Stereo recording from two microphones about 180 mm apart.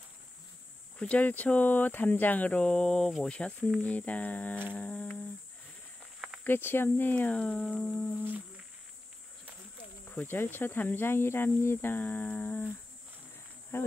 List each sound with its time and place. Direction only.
0.9 s speech: 5° left (ahead or behind)
6.4 s speech: 10° left (ahead or behind)
10.0 s speech: 10° left (ahead or behind)
13.7 s speech: 15° left (ahead or behind)